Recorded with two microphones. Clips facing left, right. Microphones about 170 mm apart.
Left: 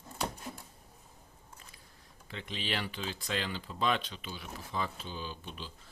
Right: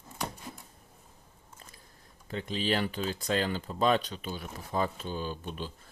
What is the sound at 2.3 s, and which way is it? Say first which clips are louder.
Speech: right 8 dB; 40° right (ahead or behind).